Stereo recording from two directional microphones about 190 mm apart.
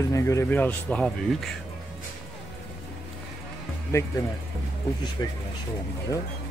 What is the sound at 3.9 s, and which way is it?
Speech, 15° left (ahead or behind).